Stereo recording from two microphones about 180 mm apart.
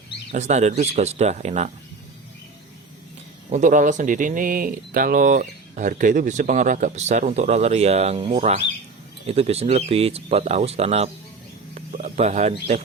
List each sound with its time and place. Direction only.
0.3 s speech: 40° right (ahead or behind)
3.5 s speech: 45° right (ahead or behind)
11.7 s bird: 45° right (ahead or behind)